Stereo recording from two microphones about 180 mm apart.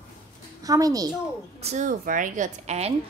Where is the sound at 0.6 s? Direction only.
20° right (ahead or behind).